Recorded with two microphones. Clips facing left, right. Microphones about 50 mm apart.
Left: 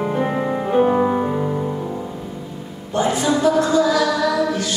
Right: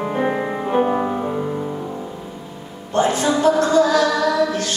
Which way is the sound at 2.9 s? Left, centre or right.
Right.